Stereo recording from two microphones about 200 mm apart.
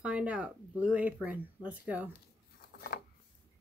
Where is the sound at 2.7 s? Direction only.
50° left (ahead or behind).